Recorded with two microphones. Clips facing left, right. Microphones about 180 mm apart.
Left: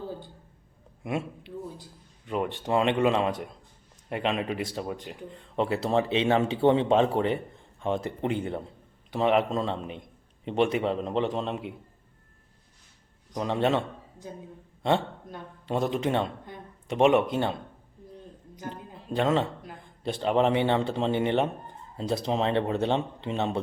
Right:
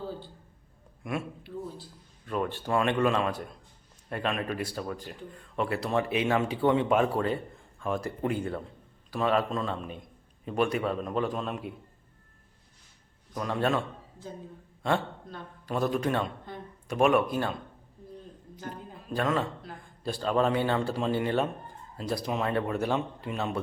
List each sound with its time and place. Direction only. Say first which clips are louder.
1.0 s speech: left 2 dB; 25° left (ahead or behind)
13.3 s speech: left 3 dB; 20° left (ahead or behind)
14.8 s speech: left 3 dB; 25° left (ahead or behind)
18.7 s a sound: left 2 dB; 25° left (ahead or behind)
19.6 s speech: left 2 dB; 20° left (ahead or behind)